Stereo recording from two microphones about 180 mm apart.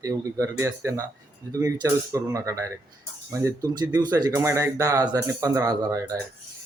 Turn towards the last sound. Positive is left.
turn(degrees=-20)  # may be behind; listen again after turning